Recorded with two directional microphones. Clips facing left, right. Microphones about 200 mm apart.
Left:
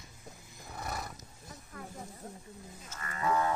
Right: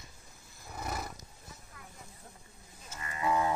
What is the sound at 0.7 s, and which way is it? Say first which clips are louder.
Roar: right 1 dB; centre (ahead or behind).